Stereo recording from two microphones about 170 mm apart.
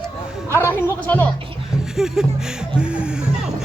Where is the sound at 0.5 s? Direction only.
15° left (ahead or behind).